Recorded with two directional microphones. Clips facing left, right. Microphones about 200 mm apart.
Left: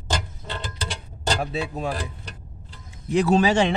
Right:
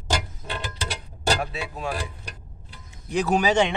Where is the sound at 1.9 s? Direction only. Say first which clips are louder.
Left 1 dB; 10° right (ahead or behind).